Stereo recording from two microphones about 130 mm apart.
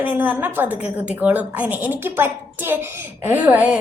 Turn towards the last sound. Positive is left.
turn(degrees=-10)  # may be behind; listen again after turning